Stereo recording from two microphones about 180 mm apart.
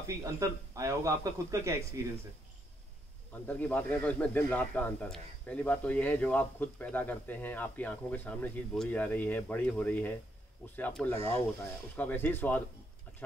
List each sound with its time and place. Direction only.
0.0 s speech: 15° right (ahead or behind)
3.4 s speech: 10° left (ahead or behind)